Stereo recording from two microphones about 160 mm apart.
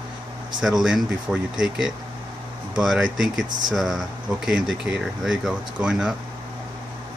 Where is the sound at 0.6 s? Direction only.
5° right (ahead or behind).